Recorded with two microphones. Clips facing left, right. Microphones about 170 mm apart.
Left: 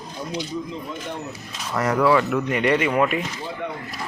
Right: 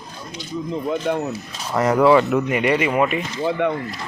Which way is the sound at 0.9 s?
65° right (ahead or behind).